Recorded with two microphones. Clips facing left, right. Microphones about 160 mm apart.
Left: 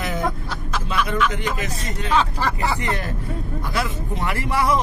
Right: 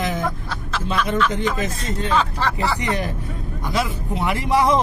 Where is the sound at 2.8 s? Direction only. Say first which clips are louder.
Right 2 dB; 15° right (ahead or behind).